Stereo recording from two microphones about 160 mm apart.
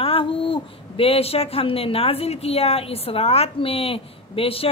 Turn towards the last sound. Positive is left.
turn(degrees=35)  # may be behind; listen again after turning